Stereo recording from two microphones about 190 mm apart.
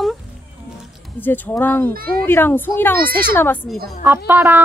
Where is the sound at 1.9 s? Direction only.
50° right (ahead or behind).